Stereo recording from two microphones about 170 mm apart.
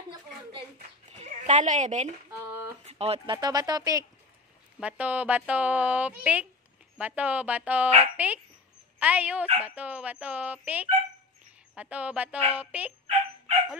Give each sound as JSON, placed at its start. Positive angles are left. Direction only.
{"t": 0.1, "sound": "a sound", "side_deg": -30}
{"t": 1.1, "sound": "speech", "side_deg": -45}
{"t": 3.3, "sound": "speech", "side_deg": -25}
{"t": 4.7, "sound": "speech", "side_deg": -10}